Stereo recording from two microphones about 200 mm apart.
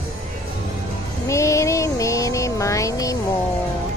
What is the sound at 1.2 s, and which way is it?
Music, 15° left (ahead or behind).